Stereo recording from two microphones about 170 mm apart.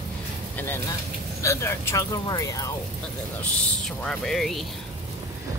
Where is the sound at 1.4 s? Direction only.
15° left (ahead or behind).